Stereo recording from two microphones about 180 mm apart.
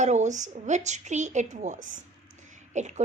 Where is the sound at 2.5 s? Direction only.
40° right (ahead or behind).